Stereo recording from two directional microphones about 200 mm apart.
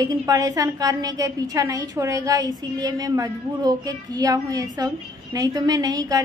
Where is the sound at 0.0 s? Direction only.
20° right (ahead or behind).